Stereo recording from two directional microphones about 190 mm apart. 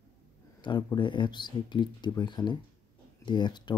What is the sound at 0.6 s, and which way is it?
Speech, 25° left (ahead or behind).